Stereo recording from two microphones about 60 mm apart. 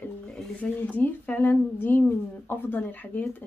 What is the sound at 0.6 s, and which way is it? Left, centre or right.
Speech, left.